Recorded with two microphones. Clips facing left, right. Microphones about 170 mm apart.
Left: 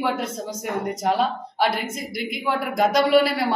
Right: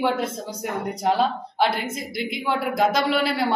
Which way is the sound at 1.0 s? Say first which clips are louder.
Right 2 dB; centre (ahead or behind).